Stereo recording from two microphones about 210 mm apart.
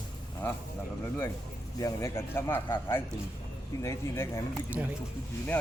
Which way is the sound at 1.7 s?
15° left (ahead or behind).